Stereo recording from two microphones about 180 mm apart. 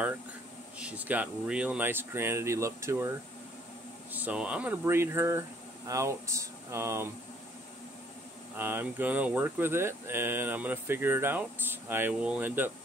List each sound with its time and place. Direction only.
0.7 s speech: 5° right (ahead or behind)
4.1 s speech: 10° right (ahead or behind)
8.5 s speech: 10° right (ahead or behind)